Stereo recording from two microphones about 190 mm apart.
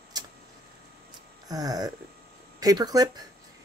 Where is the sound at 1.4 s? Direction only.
20° right (ahead or behind).